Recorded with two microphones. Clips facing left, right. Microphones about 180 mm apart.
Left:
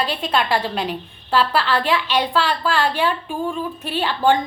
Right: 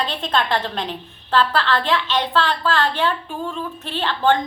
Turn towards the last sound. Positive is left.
turn(degrees=10)  # may be behind; listen again after turning